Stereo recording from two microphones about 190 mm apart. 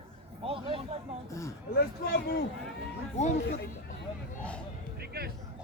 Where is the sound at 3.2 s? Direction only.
35° left (ahead or behind).